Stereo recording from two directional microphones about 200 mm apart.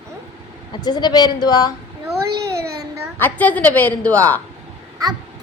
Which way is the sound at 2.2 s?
55° right (ahead or behind).